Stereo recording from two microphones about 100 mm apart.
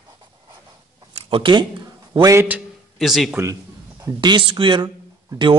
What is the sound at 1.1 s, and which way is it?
Speech, 60° right (ahead or behind).